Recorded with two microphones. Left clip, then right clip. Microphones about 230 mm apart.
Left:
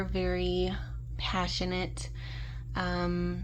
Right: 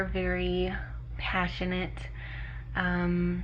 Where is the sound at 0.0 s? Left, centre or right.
Left.